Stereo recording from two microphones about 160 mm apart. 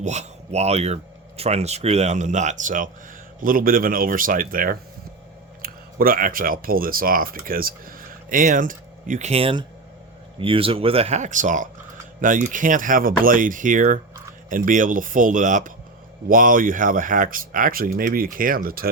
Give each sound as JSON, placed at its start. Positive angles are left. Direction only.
{"t": 0.0, "sound": "speech", "side_deg": -45}